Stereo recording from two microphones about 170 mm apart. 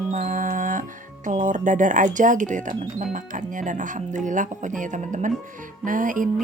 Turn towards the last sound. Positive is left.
turn(degrees=-50)  # may be behind; listen again after turning